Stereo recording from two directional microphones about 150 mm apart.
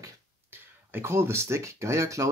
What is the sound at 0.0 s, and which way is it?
Speech, 15° right (ahead or behind).